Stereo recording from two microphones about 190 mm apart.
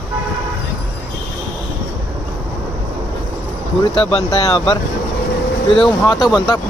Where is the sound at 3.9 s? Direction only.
30° left (ahead or behind).